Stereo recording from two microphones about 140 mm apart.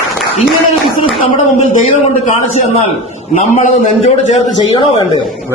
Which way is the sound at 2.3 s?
55° left (ahead or behind).